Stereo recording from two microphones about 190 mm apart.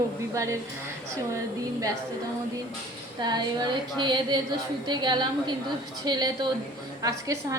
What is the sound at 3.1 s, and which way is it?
A woman's voice, 20° right (ahead or behind).